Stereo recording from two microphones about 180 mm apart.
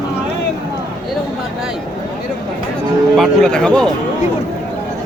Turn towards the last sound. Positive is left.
turn(degrees=5)  # may be behind; listen again after turning